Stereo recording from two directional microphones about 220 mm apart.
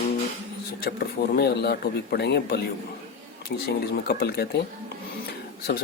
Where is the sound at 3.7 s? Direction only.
45° left (ahead or behind).